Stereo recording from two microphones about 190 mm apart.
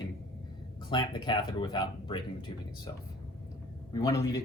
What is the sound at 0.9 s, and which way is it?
Speech, 25° left (ahead or behind).